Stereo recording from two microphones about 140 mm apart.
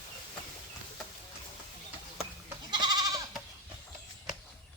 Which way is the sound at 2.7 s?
30° right (ahead or behind).